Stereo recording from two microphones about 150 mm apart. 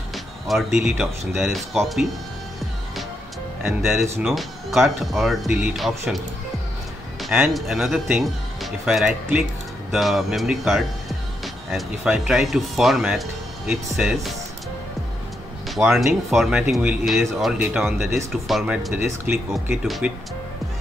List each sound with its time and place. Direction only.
0.1 s speech: centre (ahead or behind)
3.6 s speech: centre (ahead or behind)
15.7 s speech: centre (ahead or behind)